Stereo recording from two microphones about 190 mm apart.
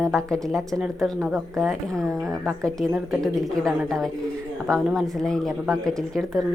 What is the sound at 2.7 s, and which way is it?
A woman's voice, centre (ahead or behind).